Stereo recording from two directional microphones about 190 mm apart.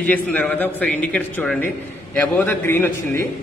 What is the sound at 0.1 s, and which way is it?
A man's voice, 10° left (ahead or behind).